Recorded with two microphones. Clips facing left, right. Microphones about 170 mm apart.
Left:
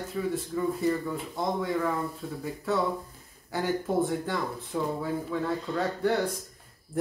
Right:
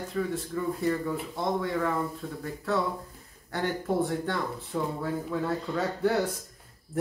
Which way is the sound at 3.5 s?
Centre (ahead or behind).